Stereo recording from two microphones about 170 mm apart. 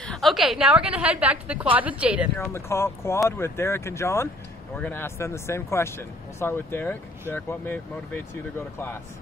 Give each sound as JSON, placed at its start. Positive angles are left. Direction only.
{"t": 0.0, "sound": "a woman's voice", "side_deg": 0}
{"t": 2.3, "sound": "speech", "side_deg": 15}